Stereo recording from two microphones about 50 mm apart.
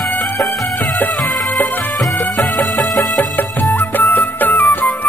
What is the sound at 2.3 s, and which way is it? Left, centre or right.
Music, centre.